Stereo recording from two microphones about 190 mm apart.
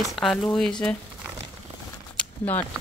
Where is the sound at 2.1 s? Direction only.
10° left (ahead or behind).